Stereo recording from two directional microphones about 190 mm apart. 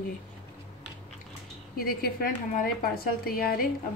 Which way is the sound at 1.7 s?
50° left (ahead or behind).